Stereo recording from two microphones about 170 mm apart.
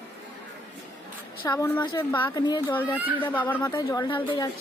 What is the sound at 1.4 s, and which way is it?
Speech, 20° left (ahead or behind).